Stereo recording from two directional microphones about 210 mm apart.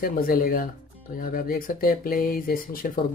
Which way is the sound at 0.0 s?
45° left (ahead or behind).